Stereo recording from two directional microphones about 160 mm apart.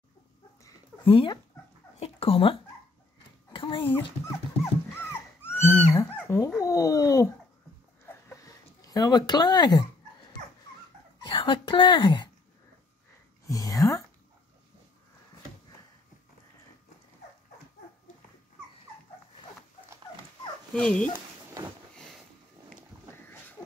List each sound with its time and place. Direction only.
1.0 s a woman's voice: 35° left (ahead or behind)
2.0 s a sound: 40° left (ahead or behind)
3.9 s speech: 15° left (ahead or behind)
4.9 s dog: 15° left (ahead or behind)
6.6 s speech: 20° left (ahead or behind)
8.0 s a sound: 20° left (ahead or behind)
11.2 s a woman's voice: 30° left (ahead or behind)
13.5 s speech: 20° left (ahead or behind)
20.7 s speech: 5° left (ahead or behind)